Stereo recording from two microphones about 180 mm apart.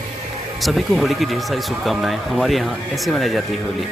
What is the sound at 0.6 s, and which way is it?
Speech, centre (ahead or behind).